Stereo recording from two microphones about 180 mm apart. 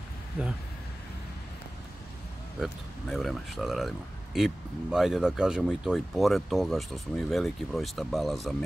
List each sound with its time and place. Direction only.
2.6 s speech: centre (ahead or behind)